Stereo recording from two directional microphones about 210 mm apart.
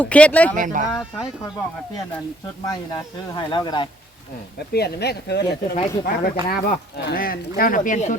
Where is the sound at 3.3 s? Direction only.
20° left (ahead or behind).